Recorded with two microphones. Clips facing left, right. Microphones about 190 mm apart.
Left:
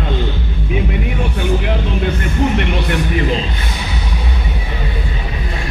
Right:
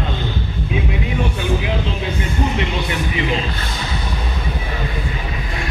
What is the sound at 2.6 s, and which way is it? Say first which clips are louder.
Music: left 3 dB; 60° left (ahead or behind).